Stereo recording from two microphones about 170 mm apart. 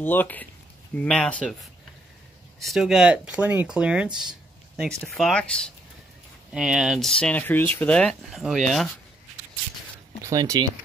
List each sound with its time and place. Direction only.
0.0 s speech: 10° left (ahead or behind)
10.2 s speech: 20° right (ahead or behind)